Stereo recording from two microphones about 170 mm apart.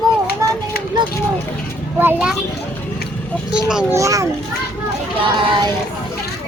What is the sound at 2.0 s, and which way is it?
Speech, 10° right (ahead or behind).